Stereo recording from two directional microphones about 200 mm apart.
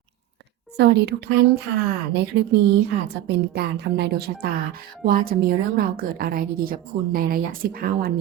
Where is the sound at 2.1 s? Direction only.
60° right (ahead or behind).